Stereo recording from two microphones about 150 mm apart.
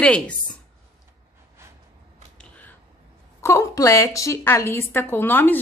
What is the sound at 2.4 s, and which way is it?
Finger snapping, 10° left (ahead or behind).